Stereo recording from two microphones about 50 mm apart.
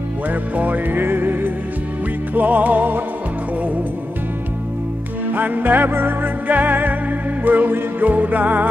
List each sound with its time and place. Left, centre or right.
0.3 s music: right
5.3 s music: right